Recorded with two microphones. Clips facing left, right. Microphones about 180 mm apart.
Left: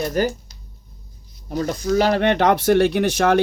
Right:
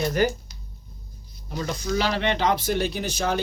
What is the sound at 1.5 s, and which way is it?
Speech, 45° left (ahead or behind).